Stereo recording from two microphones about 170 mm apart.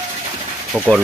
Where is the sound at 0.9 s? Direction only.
20° right (ahead or behind).